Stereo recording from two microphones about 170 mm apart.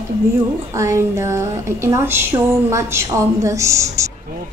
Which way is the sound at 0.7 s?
15° right (ahead or behind).